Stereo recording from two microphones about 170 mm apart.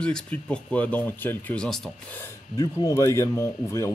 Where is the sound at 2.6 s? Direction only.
20° left (ahead or behind).